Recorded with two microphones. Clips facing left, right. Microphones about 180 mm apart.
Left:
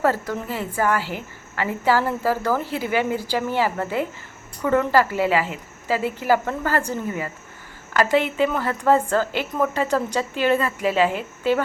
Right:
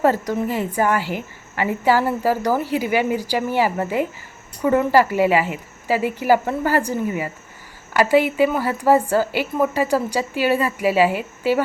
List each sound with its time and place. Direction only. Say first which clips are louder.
0.0 s a woman's voice: right 4 dB; 15° right (ahead or behind)